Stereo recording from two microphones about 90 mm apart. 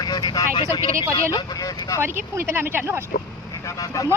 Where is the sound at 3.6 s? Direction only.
40° left (ahead or behind).